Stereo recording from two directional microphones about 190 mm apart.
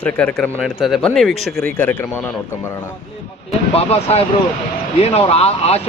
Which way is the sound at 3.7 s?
30° left (ahead or behind).